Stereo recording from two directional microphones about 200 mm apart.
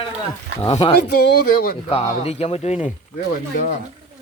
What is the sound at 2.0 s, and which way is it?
Speech, 30° left (ahead or behind).